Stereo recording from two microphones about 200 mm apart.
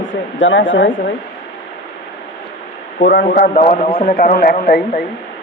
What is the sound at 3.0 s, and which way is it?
A man's voice, 50° left (ahead or behind).